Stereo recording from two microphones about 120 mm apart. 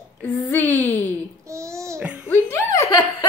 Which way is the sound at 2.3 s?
20° left (ahead or behind).